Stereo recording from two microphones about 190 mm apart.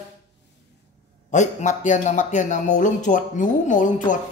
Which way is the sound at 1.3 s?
40° left (ahead or behind).